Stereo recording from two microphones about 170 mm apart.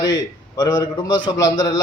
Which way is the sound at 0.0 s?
25° left (ahead or behind).